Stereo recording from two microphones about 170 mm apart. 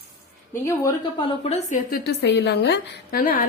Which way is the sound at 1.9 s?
75° left (ahead or behind).